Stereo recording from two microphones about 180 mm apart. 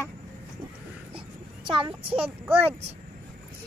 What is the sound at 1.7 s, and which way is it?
Speech, 30° right (ahead or behind).